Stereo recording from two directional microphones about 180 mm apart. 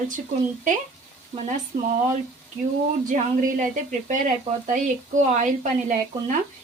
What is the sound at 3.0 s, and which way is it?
A woman's voice, 45° right (ahead or behind).